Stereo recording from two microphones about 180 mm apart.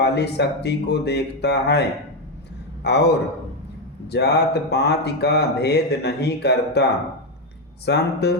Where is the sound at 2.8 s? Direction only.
70° left (ahead or behind).